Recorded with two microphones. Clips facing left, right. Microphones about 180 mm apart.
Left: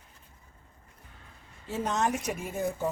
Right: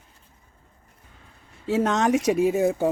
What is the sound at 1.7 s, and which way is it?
Speech, 85° right.